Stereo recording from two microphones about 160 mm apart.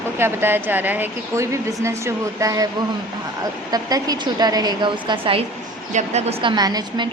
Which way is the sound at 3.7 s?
25° right (ahead or behind).